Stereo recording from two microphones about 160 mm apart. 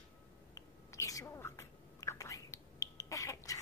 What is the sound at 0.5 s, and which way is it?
Whispering, 20° left (ahead or behind).